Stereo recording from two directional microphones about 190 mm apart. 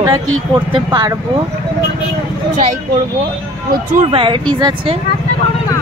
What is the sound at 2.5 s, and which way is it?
Speech, 40° right (ahead or behind).